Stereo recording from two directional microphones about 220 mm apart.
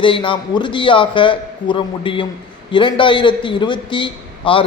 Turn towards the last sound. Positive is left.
turn(degrees=20)  # may be behind; listen again after turning